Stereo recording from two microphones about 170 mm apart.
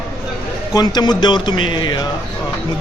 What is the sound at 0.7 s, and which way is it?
Speech, 25° left (ahead or behind).